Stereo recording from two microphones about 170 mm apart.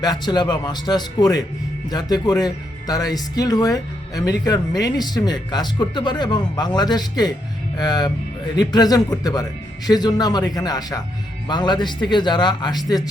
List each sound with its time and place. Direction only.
0.0 s speech: 25° left (ahead or behind)